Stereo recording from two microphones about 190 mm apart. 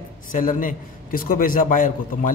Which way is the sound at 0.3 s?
45° left (ahead or behind).